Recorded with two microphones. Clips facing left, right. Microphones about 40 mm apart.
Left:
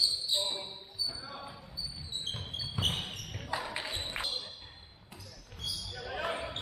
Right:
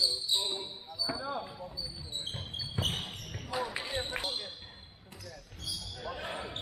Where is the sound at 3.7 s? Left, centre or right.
Centre.